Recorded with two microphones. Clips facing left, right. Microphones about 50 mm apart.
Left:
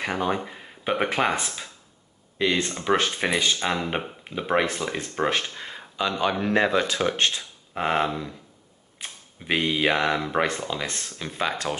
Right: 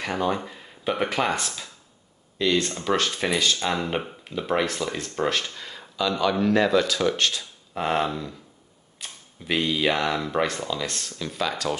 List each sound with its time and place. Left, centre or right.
0.0 s speech: centre